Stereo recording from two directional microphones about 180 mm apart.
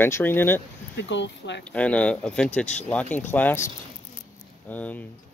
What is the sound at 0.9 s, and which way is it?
Speech, 80° left.